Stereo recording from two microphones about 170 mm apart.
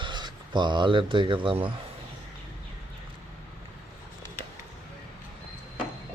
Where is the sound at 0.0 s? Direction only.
25° right (ahead or behind).